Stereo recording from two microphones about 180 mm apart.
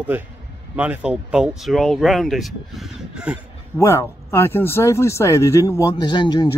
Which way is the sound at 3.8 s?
15° left (ahead or behind).